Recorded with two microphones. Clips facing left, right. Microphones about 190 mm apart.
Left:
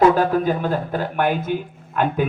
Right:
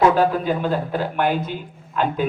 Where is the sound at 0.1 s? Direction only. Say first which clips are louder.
Left 1 dB; 45° left (ahead or behind).